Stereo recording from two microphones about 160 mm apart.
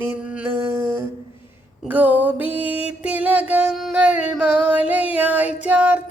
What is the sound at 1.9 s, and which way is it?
Music, 10° right (ahead or behind).